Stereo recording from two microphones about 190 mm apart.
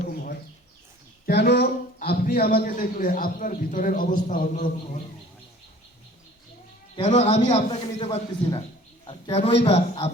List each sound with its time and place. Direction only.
1.3 s a man's voice: 60° left (ahead or behind); by 4.9 s 45° left (ahead or behind)
7.0 s a man's voice: 40° left (ahead or behind)